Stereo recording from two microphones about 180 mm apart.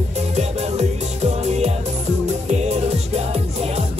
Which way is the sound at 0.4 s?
35° right (ahead or behind).